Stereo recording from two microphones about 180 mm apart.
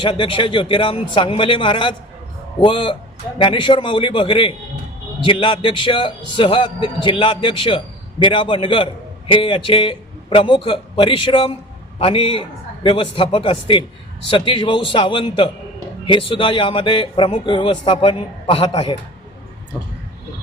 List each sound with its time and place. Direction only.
0.0 s a man's voice: 30° left (ahead or behind)